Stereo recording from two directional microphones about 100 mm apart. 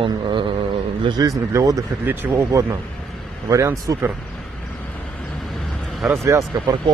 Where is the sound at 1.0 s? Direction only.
40° right (ahead or behind).